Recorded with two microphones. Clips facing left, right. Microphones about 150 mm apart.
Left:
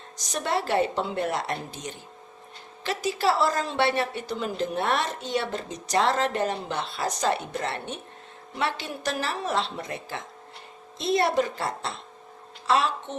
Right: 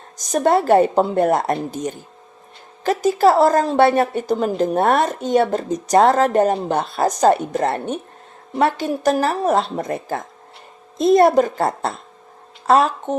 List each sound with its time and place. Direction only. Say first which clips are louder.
0.2 s a woman's voice: right 11 dB; 45° right (ahead or behind)